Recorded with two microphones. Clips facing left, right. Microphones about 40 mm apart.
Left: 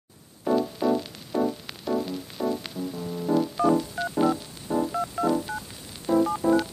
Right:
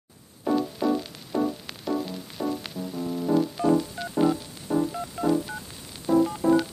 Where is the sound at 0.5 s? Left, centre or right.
Centre.